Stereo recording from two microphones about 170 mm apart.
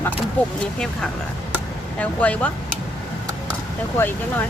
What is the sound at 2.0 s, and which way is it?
Speech, 10° left (ahead or behind).